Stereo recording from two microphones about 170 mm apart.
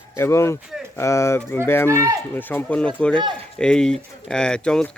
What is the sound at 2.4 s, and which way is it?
Speech, 10° left (ahead or behind).